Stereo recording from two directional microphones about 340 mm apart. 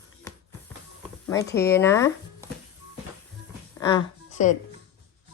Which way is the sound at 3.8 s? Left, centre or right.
Centre.